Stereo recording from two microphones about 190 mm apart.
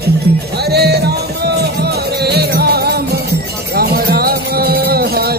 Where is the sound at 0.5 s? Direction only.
55° right (ahead or behind).